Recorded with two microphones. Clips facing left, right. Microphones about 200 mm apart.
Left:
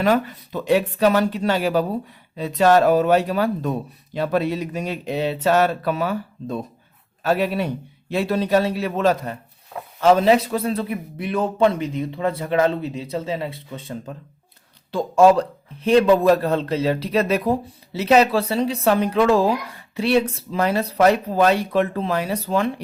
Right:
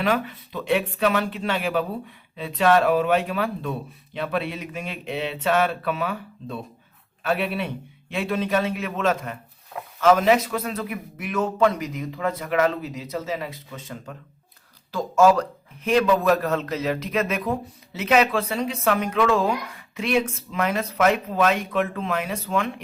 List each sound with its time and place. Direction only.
0.0 s speech: 40° left (ahead or behind)